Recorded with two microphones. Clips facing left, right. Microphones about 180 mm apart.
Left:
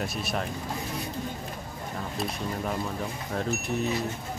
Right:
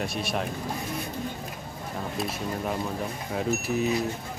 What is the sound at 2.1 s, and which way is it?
Speech, centre (ahead or behind).